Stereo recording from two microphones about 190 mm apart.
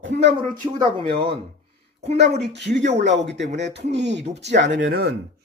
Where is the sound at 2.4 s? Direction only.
65° right (ahead or behind).